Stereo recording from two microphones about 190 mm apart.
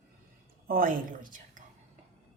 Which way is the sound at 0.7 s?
45° right (ahead or behind).